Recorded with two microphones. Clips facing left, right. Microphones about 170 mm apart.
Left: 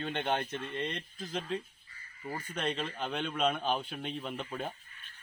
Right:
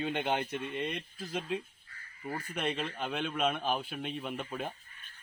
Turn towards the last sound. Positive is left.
turn(degrees=-5)  # may be behind; listen again after turning